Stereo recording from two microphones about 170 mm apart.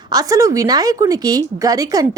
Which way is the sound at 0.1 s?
20° right (ahead or behind).